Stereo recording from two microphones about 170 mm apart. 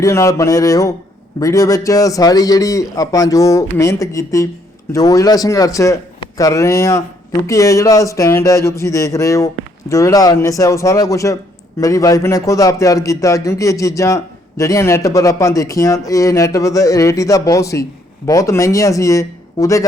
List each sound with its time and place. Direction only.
0.0 s speech: 15° left (ahead or behind)